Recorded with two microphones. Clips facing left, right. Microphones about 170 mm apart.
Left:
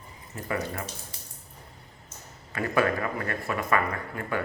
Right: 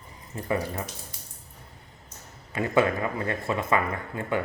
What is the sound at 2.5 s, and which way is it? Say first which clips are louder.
Speech: right 2 dB; 20° right (ahead or behind).